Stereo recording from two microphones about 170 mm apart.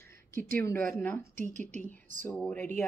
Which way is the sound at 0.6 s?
15° left (ahead or behind).